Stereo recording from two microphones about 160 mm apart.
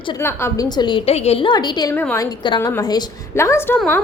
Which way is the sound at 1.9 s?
15° left (ahead or behind).